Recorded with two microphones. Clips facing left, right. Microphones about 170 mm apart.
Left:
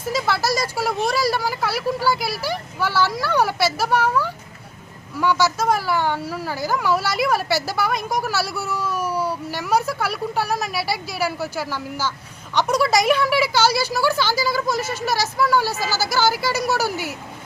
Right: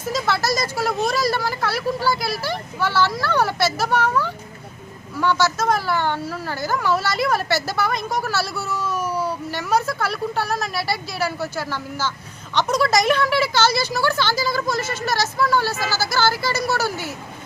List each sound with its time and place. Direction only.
0.1 s speech: 10° left (ahead or behind)